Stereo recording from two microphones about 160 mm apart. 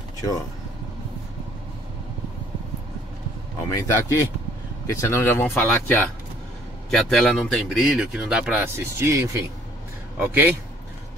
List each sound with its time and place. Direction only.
3.6 s a man's voice: 20° left (ahead or behind); by 10.5 s 15° right (ahead or behind)